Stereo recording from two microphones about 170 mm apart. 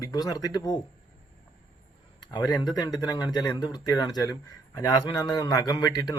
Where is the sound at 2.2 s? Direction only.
25° left (ahead or behind).